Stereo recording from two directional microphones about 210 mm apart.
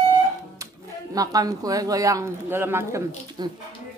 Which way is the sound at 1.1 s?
15° right (ahead or behind).